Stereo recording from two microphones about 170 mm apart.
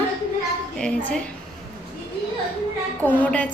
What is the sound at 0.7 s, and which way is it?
Speech, 5° left (ahead or behind).